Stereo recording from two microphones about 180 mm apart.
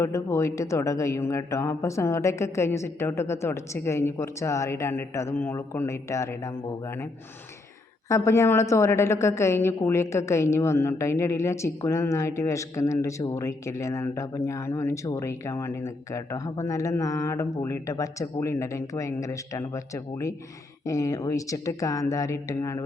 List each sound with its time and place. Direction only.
0.0 s a woman's voice: 15° left (ahead or behind)
8.1 s a woman's voice: 15° left (ahead or behind)